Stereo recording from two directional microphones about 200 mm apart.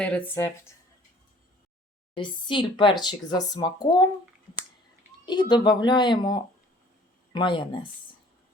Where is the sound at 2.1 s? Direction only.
25° left (ahead or behind).